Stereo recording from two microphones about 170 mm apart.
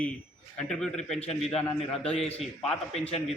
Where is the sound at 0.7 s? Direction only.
5° left (ahead or behind).